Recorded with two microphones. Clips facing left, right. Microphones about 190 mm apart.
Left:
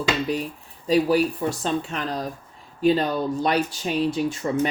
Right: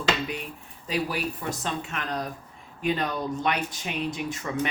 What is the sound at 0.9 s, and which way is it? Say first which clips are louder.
Speech: left 10 dB; 30° left (ahead or behind).